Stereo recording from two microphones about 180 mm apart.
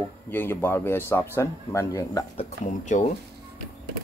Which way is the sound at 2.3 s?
45° left (ahead or behind).